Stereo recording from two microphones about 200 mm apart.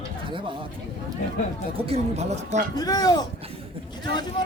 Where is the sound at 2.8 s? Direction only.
20° left (ahead or behind).